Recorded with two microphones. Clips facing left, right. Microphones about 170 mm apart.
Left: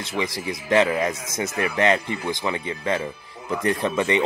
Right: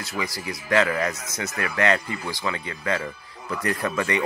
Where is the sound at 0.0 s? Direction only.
25° left (ahead or behind).